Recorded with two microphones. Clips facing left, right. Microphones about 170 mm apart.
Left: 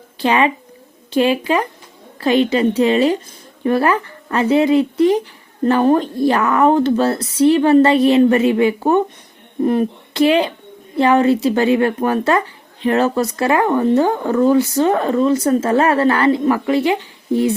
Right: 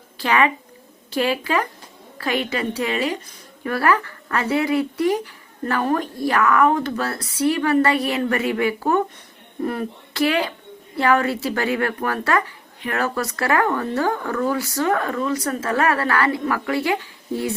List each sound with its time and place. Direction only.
0.2 s speech: 20° left (ahead or behind)